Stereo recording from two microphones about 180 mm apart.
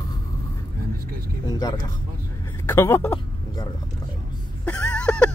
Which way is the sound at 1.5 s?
25° left (ahead or behind).